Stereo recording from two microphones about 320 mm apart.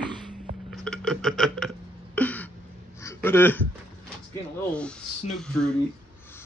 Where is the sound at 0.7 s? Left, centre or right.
Centre.